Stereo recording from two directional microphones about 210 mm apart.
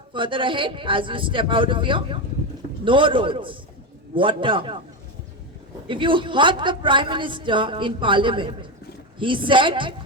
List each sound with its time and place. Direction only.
0.1 s a woman's voice: 25° right (ahead or behind)
5.9 s a woman's voice: 25° right (ahead or behind)